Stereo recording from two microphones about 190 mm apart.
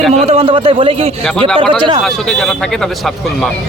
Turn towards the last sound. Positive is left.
turn(degrees=0)  # may be behind; listen again after turning